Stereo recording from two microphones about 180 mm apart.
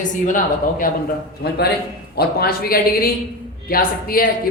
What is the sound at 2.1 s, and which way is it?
A man's voice, 60° left (ahead or behind).